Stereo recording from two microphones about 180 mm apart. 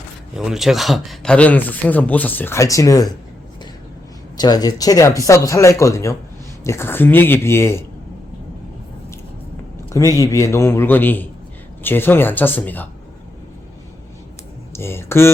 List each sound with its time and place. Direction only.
0.3 s a man's voice: centre (ahead or behind); by 3.1 s 20° left (ahead or behind)
4.4 s a man's voice: 20° left (ahead or behind)
9.9 s a man's voice: 20° left (ahead or behind)
14.7 s speech: 15° left (ahead or behind)